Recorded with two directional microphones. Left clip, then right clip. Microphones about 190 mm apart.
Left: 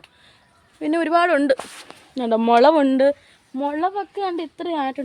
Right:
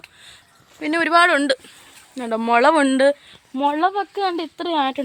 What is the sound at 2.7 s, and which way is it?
Speech, 15° left (ahead or behind).